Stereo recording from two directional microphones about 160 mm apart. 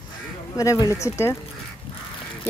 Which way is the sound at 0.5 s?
20° left (ahead or behind).